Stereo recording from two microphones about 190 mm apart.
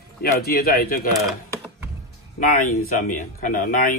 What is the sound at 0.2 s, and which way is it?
Speech, 55° left (ahead or behind).